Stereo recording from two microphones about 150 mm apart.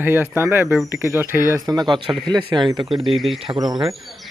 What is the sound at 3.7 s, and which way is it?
Speech, 25° right (ahead or behind).